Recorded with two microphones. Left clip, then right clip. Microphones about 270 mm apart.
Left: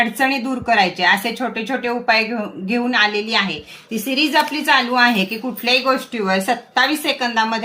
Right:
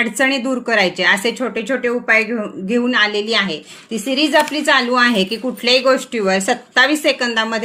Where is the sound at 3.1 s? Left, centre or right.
Left.